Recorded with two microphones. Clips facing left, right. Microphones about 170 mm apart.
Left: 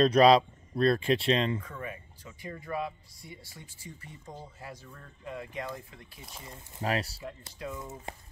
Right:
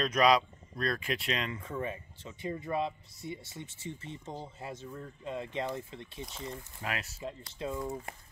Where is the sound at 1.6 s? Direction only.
25° right (ahead or behind).